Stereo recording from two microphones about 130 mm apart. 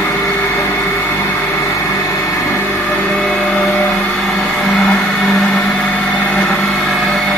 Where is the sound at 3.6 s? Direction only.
10° left (ahead or behind).